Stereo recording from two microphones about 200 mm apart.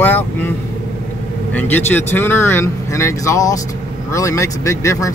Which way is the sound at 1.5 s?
10° left (ahead or behind).